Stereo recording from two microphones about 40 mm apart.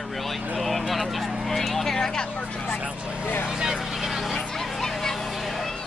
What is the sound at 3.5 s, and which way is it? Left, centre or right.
Speech, centre.